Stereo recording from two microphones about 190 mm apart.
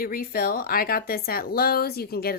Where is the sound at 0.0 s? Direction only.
50° left (ahead or behind).